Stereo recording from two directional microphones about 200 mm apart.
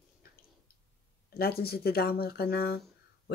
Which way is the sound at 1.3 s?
50° left (ahead or behind).